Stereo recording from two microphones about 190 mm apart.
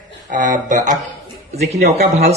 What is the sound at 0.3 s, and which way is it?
Speech, 40° right (ahead or behind).